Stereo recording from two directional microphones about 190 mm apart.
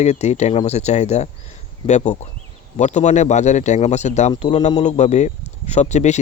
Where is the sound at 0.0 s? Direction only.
35° left (ahead or behind).